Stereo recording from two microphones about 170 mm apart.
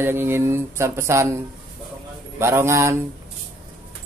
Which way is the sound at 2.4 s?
15° right (ahead or behind).